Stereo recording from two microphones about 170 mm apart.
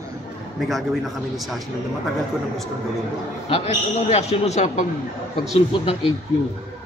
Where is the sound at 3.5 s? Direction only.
40° left (ahead or behind).